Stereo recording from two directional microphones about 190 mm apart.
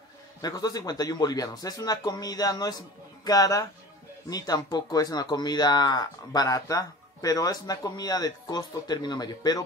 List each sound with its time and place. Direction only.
0.4 s speech: 20° left (ahead or behind)